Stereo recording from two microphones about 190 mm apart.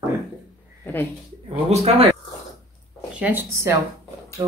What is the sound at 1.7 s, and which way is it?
Speech, 35° right (ahead or behind).